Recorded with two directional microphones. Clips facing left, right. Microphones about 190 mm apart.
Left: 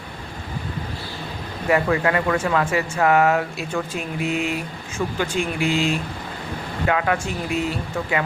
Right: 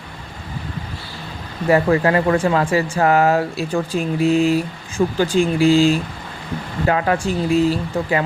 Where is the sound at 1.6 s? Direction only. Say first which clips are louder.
Right 4 dB; 35° right (ahead or behind).